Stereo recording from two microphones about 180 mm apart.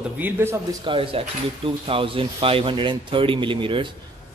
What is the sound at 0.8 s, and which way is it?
Speech, 30° right (ahead or behind).